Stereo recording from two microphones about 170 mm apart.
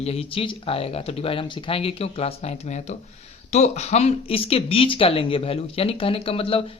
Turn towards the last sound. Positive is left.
turn(degrees=35)  # may be behind; listen again after turning